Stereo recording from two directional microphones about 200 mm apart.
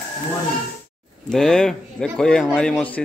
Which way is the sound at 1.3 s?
5° left (ahead or behind).